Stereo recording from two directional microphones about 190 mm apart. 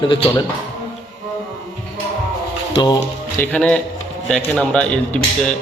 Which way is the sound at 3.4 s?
5° left (ahead or behind).